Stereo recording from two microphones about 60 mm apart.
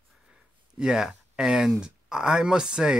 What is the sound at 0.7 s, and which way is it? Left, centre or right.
Speech, centre.